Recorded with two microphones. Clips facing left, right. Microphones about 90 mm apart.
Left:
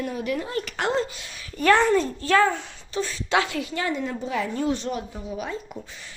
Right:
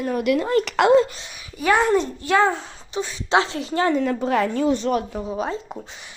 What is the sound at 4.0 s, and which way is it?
A woman's voice, 85° right.